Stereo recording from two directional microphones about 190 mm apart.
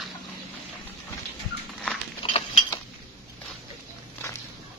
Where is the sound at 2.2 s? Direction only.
30° left (ahead or behind).